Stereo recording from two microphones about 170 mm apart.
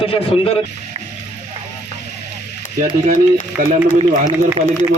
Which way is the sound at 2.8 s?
50° right (ahead or behind).